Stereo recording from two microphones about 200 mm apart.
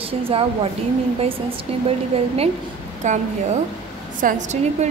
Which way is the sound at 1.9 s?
30° right (ahead or behind).